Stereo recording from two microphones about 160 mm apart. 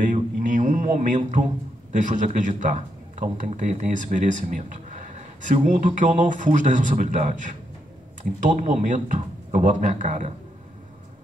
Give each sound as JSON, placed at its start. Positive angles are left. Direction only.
{"t": 0.0, "sound": "a man's voice", "side_deg": -55}
{"t": 8.5, "sound": "a man's voice", "side_deg": -50}